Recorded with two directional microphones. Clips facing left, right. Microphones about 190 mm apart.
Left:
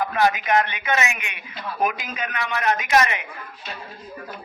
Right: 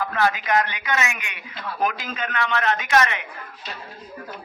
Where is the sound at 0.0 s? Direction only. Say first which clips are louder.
Left 2 dB; 15° left (ahead or behind).